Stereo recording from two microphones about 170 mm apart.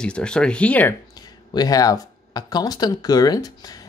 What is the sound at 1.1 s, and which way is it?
Speech, 25° left (ahead or behind).